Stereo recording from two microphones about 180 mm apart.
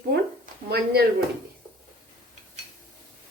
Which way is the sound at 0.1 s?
60° right (ahead or behind).